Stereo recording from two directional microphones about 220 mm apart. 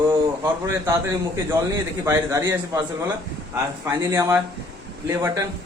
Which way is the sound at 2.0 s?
15° right (ahead or behind).